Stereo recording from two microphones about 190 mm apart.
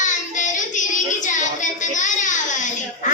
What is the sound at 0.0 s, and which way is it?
Child singing, 40° left (ahead or behind).